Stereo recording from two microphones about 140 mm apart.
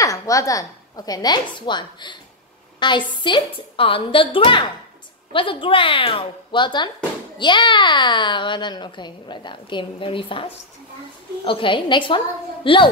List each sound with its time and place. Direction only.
0.0 s a woman's voice: 25° left (ahead or behind)